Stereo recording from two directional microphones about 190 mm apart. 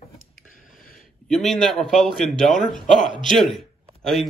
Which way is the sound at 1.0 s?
Centre (ahead or behind).